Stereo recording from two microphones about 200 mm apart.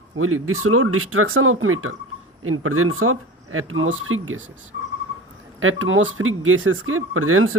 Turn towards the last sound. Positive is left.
turn(degrees=-90)